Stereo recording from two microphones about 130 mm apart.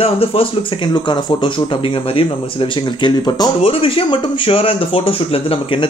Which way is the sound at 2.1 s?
40° left (ahead or behind).